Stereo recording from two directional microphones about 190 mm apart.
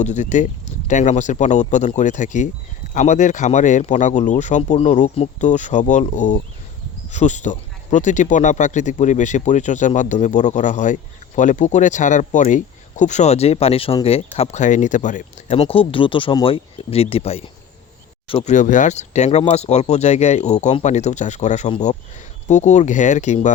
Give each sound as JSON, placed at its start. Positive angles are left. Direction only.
{"t": 0.0, "sound": "speech", "side_deg": 40}